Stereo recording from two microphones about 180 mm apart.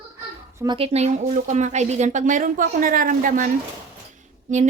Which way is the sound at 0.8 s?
35° right (ahead or behind).